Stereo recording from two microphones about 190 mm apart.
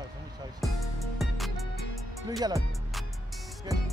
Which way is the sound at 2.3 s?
20° right (ahead or behind).